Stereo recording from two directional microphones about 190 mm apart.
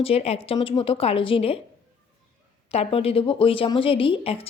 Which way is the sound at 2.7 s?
30° left (ahead or behind).